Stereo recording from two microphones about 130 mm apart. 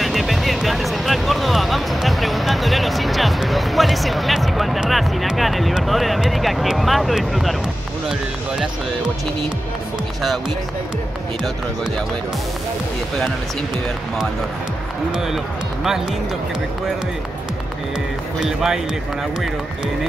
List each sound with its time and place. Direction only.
0.0 s music: centre (ahead or behind)
15.1 s speech: 5° right (ahead or behind)
18.4 s speech: 5° right (ahead or behind)